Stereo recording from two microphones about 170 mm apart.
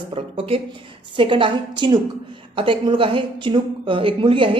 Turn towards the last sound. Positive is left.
turn(degrees=-30)  # may be behind; listen again after turning